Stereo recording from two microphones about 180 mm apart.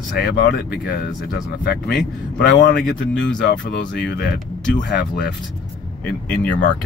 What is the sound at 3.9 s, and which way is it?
Speech, 70° left (ahead or behind).